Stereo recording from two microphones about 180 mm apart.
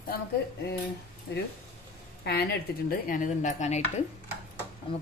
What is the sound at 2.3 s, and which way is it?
Speech, 60° left (ahead or behind).